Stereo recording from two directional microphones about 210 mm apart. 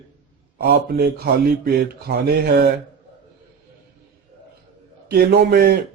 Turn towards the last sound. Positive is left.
turn(degrees=-45)  # may be behind; listen again after turning